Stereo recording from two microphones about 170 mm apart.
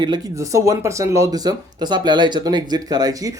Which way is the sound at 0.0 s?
20° right (ahead or behind).